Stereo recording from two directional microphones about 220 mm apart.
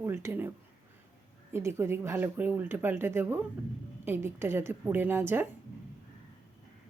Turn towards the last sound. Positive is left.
turn(degrees=-10)  # may be behind; listen again after turning